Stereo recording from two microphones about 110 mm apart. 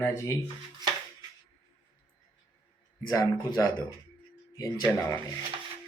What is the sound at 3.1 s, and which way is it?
Speech, 35° left (ahead or behind).